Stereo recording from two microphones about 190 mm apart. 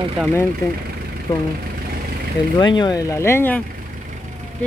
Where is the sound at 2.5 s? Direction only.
25° left (ahead or behind).